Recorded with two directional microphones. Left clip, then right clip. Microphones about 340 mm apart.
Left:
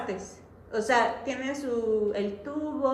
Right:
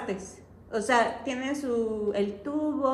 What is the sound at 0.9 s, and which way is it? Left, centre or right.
A woman's voice, centre.